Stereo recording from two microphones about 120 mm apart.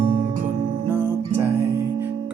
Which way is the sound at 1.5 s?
25° right (ahead or behind).